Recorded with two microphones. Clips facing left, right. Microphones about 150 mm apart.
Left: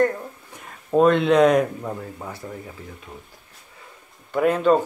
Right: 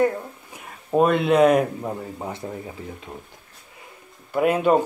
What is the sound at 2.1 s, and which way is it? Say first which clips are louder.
Speech: right 3 dB; 25° right (ahead or behind).